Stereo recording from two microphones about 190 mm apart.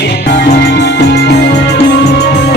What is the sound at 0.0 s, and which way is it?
Music, 60° left (ahead or behind).